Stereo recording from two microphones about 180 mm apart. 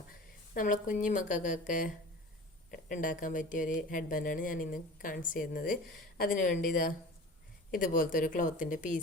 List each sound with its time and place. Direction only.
0.1 s speech: 50° left (ahead or behind)